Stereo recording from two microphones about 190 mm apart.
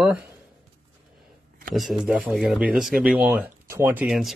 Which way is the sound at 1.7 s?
Centre (ahead or behind).